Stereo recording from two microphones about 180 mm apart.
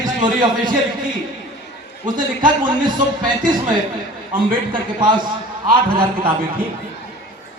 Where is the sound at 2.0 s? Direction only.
50° right (ahead or behind).